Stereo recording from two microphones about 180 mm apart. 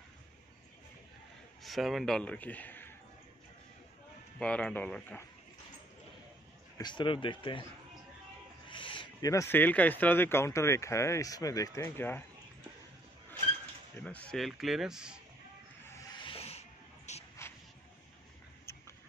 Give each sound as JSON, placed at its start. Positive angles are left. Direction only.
{"t": 1.6, "sound": "a man's voice", "side_deg": 0}
{"t": 4.4, "sound": "speech", "side_deg": 5}
{"t": 6.8, "sound": "speech", "side_deg": 25}
{"t": 8.6, "sound": "speech", "side_deg": 25}
{"t": 13.9, "sound": "speech", "side_deg": 5}
{"t": 16.3, "sound": "a sound", "side_deg": 35}
{"t": 17.4, "sound": "a sound", "side_deg": 15}